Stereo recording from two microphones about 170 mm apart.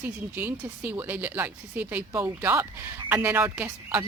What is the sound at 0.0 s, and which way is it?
Speech, 10° right (ahead or behind).